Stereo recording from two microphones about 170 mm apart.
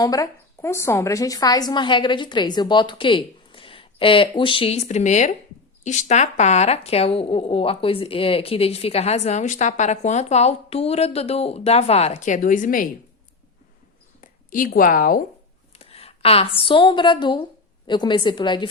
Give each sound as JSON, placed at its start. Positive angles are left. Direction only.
{"t": 0.0, "sound": "a woman's voice", "side_deg": 20}
{"t": 14.2, "sound": "a woman's voice", "side_deg": 55}
{"t": 15.8, "sound": "a woman's voice", "side_deg": 35}